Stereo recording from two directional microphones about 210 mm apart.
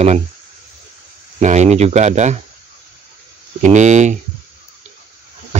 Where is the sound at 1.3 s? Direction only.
35° right (ahead or behind).